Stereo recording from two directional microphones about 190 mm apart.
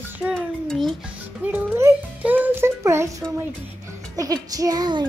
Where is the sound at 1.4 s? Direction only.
10° right (ahead or behind).